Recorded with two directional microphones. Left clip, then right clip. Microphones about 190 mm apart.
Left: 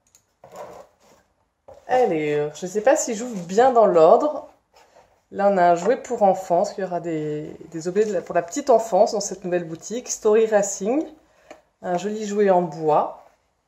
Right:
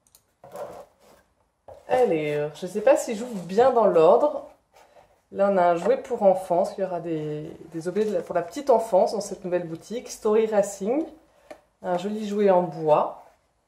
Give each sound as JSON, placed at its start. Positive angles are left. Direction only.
{"t": 1.9, "sound": "speech", "side_deg": 40}
{"t": 5.3, "sound": "speech", "side_deg": 50}